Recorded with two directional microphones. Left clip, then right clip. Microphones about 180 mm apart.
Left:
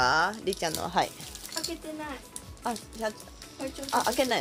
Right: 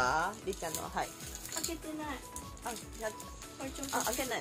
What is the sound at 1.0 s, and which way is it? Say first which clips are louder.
Speech: left 10 dB; 60° left (ahead or behind).